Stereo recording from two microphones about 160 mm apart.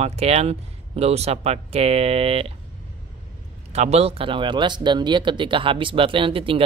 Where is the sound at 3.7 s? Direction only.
40° right (ahead or behind).